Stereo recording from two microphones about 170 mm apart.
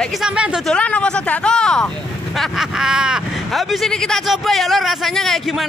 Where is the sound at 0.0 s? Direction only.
Centre (ahead or behind).